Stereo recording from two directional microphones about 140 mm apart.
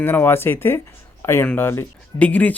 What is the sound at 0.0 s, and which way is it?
Speech, 15° left (ahead or behind).